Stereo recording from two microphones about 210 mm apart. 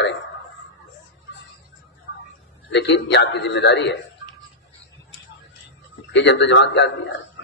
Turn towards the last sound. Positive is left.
turn(degrees=55)  # may be behind; listen again after turning